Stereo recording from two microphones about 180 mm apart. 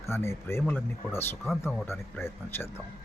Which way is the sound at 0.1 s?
15° left (ahead or behind).